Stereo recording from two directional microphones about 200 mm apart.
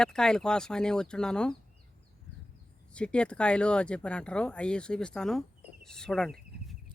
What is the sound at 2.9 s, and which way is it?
Speech, 5° left (ahead or behind).